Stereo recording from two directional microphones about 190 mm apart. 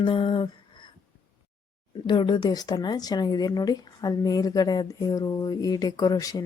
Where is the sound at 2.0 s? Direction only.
25° left (ahead or behind).